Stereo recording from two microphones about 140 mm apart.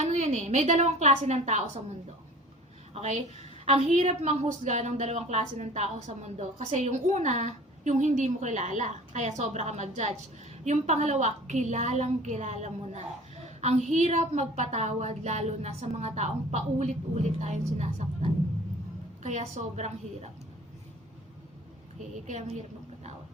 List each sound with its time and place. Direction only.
0.0 s a woman's voice: 55° right (ahead or behind)
2.9 s a woman's voice: 55° right (ahead or behind)
22.3 s a woman's voice: 55° right (ahead or behind)